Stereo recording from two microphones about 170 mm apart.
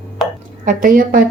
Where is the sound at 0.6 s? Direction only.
50° right (ahead or behind).